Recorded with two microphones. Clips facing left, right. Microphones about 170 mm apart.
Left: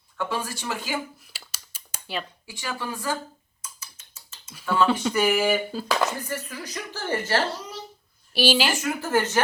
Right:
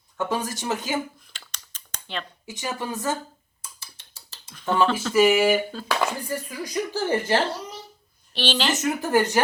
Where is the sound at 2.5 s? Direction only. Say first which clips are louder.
Right 5 dB; 20° right (ahead or behind).